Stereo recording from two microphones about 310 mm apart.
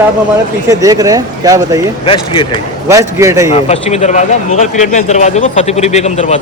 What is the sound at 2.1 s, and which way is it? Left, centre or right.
Speech, centre.